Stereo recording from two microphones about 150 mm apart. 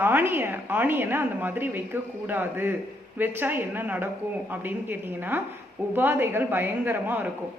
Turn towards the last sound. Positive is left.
turn(degrees=-15)  # may be behind; listen again after turning